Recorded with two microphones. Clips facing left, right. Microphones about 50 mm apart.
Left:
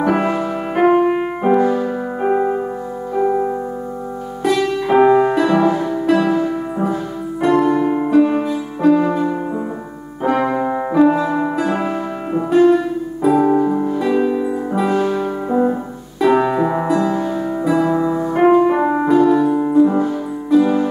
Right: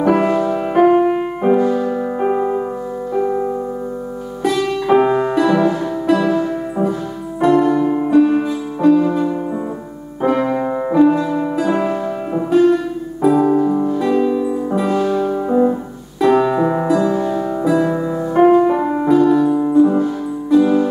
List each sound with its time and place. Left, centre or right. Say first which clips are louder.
0.0 s music: right 3 dB; centre
4.5 s music: right 1 dB; centre
7.8 s music: even; centre
8.1 s music: right 2 dB; centre; by 19.0 s left
19.0 s music: right 2 dB; centre